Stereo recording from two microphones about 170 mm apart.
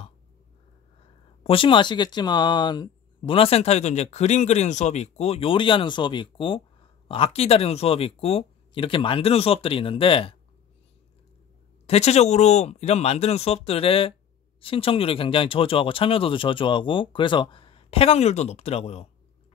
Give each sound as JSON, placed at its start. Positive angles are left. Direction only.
{"t": 1.4, "sound": "speech", "side_deg": 30}
{"t": 11.8, "sound": "speech", "side_deg": 40}